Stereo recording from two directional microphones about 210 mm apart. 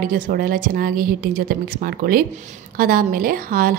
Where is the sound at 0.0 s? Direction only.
45° right (ahead or behind).